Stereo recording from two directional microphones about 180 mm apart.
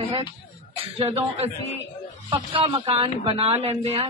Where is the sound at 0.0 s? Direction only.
30° right (ahead or behind).